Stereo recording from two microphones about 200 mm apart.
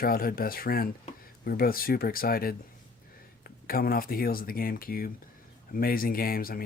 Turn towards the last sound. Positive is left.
turn(degrees=45)  # may be behind; listen again after turning